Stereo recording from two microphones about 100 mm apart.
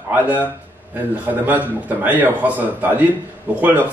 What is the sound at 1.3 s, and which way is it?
A man's voice, 15° right (ahead or behind).